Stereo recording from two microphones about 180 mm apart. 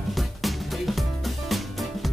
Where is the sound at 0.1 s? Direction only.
Centre (ahead or behind).